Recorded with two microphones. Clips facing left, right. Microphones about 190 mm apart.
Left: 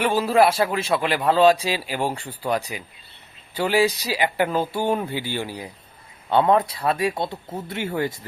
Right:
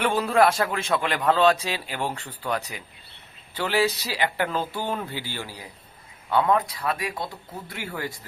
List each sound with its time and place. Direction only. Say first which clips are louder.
0.0 s speech: left 2 dB; 5° left (ahead or behind)
6.2 s speech: left 4 dB; 30° left (ahead or behind)